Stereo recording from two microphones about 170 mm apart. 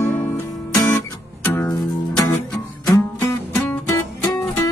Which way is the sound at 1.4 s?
10° left (ahead or behind).